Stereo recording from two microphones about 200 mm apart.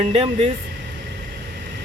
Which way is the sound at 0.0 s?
30° right (ahead or behind).